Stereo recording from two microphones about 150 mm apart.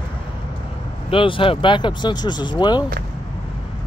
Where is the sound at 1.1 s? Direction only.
35° left (ahead or behind).